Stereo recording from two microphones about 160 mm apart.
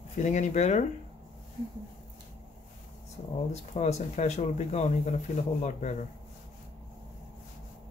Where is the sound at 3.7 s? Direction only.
45° left (ahead or behind).